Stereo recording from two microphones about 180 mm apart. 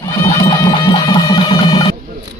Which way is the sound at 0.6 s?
25° left (ahead or behind).